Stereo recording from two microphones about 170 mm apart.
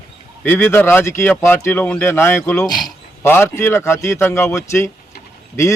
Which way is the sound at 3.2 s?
15° left (ahead or behind).